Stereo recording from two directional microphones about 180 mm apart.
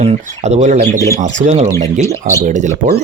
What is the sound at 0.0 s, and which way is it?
Speech, 35° right (ahead or behind).